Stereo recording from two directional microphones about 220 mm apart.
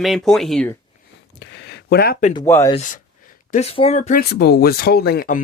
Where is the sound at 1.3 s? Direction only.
50° left (ahead or behind).